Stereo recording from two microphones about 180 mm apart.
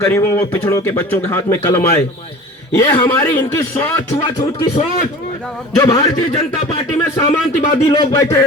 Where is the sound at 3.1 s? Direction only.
10° left (ahead or behind).